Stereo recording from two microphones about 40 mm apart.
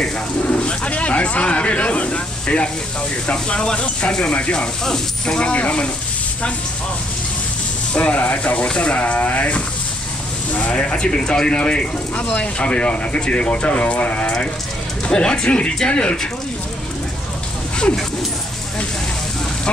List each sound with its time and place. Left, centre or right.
0.4 s a sound: left
3.3 s speech: left
7.9 s speech: left
12.2 s speech: left
12.5 s speech: left
15.0 s speech: left